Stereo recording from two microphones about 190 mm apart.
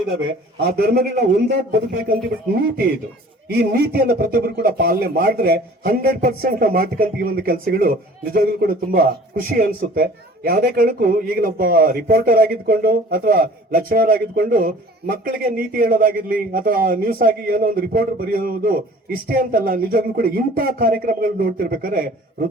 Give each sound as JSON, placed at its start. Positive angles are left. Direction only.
{"t": 0.6, "sound": "a man's voice", "side_deg": -55}
{"t": 2.6, "sound": "speech", "side_deg": -50}